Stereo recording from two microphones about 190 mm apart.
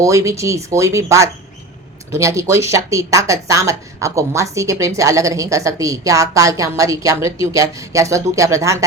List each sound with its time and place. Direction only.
0.0 s speech: 15° right (ahead or behind)